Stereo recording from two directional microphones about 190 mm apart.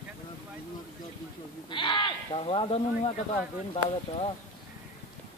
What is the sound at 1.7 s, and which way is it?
Speech, 25° left (ahead or behind).